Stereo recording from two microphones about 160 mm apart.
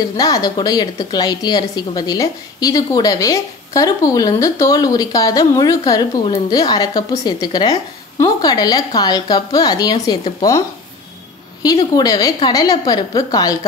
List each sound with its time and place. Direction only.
0.2 s a woman's voice: 25° left (ahead or behind)
11.6 s a woman's voice: 20° left (ahead or behind)